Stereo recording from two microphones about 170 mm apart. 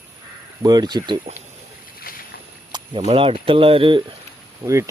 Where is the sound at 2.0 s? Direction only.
60° left (ahead or behind).